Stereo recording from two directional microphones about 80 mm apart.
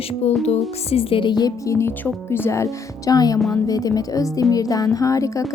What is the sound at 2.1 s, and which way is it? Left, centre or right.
Speech, left.